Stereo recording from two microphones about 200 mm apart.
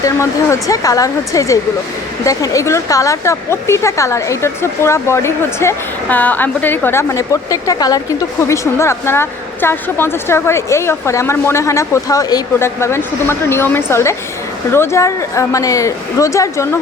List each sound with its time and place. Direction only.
0.0 s a woman's voice: 15° left (ahead or behind)